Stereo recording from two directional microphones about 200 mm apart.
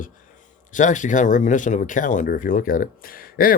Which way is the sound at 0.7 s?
40° left (ahead or behind).